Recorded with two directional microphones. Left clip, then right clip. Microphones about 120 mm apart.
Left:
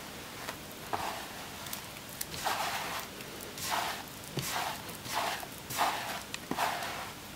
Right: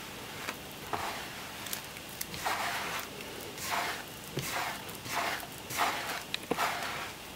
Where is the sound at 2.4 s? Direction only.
5° left (ahead or behind).